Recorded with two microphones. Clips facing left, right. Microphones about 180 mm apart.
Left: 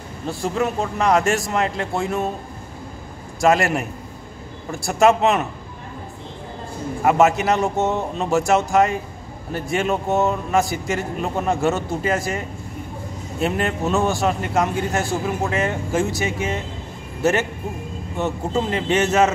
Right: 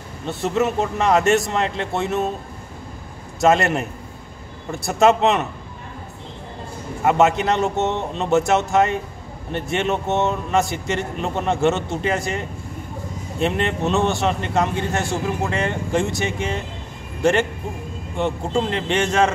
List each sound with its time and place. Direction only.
0.3 s a man's voice: centre (ahead or behind)
3.3 s a man's voice: centre (ahead or behind)
7.1 s a man's voice: centre (ahead or behind)
7.6 s speech: 20° right (ahead or behind)
8.2 s a man's voice: centre (ahead or behind)